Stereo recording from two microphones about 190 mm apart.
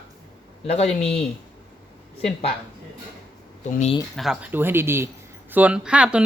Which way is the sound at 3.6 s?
40° left (ahead or behind).